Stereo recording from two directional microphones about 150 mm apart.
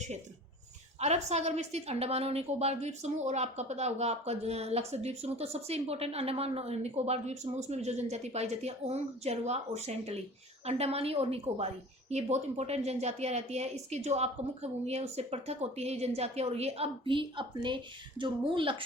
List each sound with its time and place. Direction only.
0.9 s a woman's voice: 45° right (ahead or behind)